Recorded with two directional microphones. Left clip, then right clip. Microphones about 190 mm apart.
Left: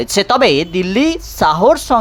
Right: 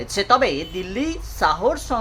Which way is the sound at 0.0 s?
35° left (ahead or behind).